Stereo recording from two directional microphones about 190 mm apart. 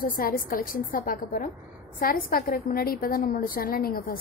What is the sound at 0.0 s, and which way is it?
A woman's voice, 50° left (ahead or behind).